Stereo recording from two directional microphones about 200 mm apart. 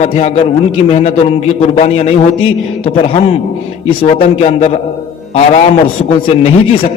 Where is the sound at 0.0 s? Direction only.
35° left (ahead or behind).